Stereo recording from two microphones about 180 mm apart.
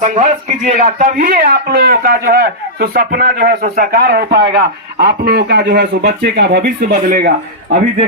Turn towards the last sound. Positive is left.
turn(degrees=-55)  # may be behind; listen again after turning